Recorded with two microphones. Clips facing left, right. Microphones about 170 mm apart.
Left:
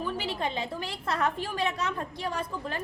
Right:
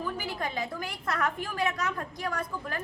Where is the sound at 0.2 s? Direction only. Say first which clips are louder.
Left 2 dB; 25° left (ahead or behind).